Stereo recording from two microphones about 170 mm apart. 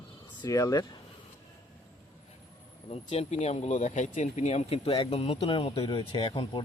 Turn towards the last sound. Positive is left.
turn(degrees=30)  # may be behind; listen again after turning